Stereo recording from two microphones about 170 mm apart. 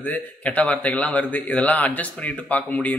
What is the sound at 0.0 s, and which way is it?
A man's voice, 10° left (ahead or behind).